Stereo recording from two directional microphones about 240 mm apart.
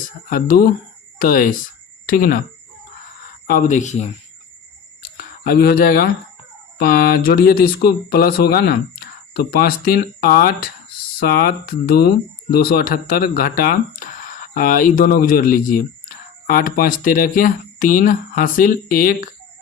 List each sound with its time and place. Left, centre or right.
0.3 s speech: left
3.4 s speech: left
5.1 s speech: left